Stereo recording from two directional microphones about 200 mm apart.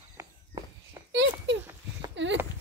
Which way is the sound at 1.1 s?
65° right (ahead or behind).